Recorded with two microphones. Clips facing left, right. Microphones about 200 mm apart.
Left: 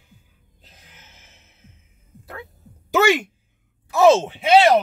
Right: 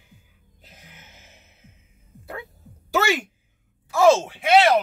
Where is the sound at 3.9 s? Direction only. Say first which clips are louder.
Left 2 dB; 20° left (ahead or behind).